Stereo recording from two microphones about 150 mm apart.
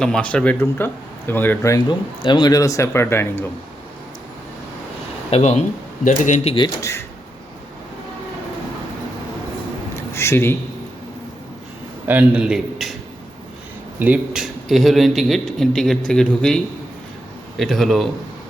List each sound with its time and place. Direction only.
0.0 s speech: 5° left (ahead or behind)
1.9 s speech: 30° left (ahead or behind)
5.3 s speech: 45° left (ahead or behind)
9.9 s a sound: 15° left (ahead or behind)
12.0 s a man's voice: 10° right (ahead or behind)
14.0 s a man's voice: 10° right (ahead or behind)
17.6 s a man's voice: centre (ahead or behind)